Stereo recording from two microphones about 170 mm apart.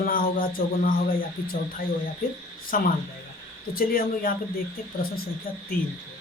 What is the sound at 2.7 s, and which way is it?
Speech, 55° left (ahead or behind).